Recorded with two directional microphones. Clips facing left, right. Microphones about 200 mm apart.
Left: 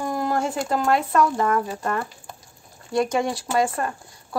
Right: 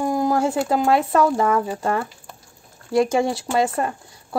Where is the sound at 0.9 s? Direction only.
25° right (ahead or behind).